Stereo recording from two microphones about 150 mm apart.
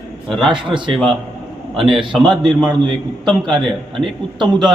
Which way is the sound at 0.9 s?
Centre (ahead or behind).